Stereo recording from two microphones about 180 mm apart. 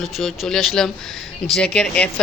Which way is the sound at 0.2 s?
Centre (ahead or behind).